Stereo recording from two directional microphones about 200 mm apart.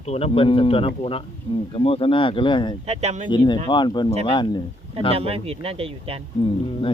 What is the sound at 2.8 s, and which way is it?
Speech, 35° right (ahead or behind).